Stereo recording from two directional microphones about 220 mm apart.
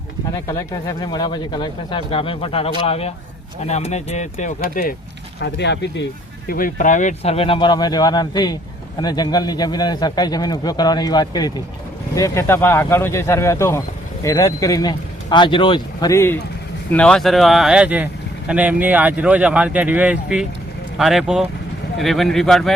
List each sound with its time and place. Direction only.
0.4 s speech: 15° left (ahead or behind); by 4.9 s 40° left (ahead or behind)
5.4 s speech: 50° left (ahead or behind)
6.5 s speech: 40° left (ahead or behind); by 22.7 s centre (ahead or behind)